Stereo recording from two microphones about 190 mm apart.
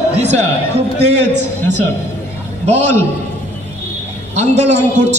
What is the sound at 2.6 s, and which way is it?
Speech, 40° right (ahead or behind).